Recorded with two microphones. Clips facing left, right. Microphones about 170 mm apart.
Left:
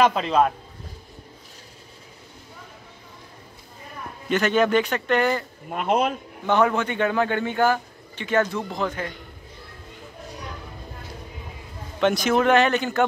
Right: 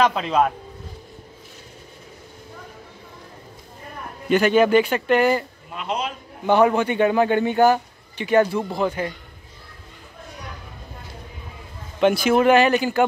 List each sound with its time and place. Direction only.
0.0 s a man's voice: centre (ahead or behind)
4.3 s speech: 10° right (ahead or behind)
5.7 s speech: 50° left (ahead or behind)
6.4 s speech: 15° right (ahead or behind)
12.0 s speech: 5° right (ahead or behind)